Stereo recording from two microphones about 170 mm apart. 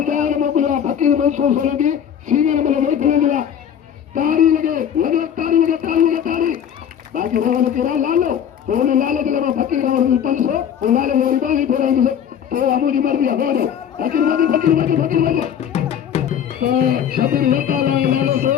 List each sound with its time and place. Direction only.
0.0 s a sound: 50° right (ahead or behind)
15.7 s music: 40° left (ahead or behind)
16.6 s music: 60° right (ahead or behind)